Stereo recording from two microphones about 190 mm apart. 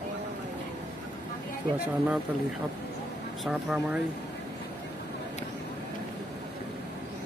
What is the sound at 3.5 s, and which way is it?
Speech, 5° right (ahead or behind).